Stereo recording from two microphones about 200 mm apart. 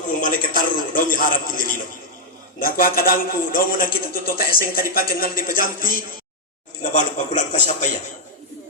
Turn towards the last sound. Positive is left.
turn(degrees=40)  # may be behind; listen again after turning